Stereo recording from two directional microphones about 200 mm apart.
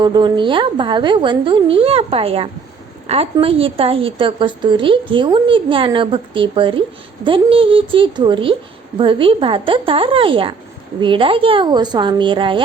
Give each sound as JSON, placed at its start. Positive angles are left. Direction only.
{"t": 0.0, "sound": "a woman's voice", "side_deg": -20}